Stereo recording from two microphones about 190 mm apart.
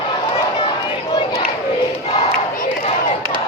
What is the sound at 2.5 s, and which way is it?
Crowd, 45° left (ahead or behind).